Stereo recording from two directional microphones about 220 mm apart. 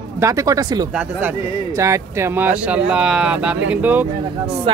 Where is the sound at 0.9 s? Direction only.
5° right (ahead or behind).